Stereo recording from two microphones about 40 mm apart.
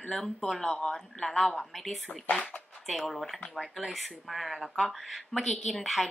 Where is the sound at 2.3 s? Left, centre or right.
Left.